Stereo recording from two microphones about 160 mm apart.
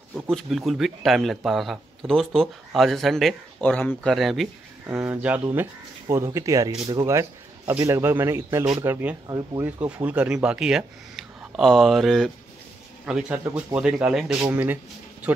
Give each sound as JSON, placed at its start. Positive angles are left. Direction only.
{"t": 0.3, "sound": "speech", "side_deg": 0}
{"t": 4.8, "sound": "speech", "side_deg": -10}